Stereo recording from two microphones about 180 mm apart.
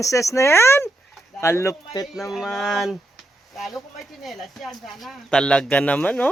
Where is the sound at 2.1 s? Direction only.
Centre (ahead or behind).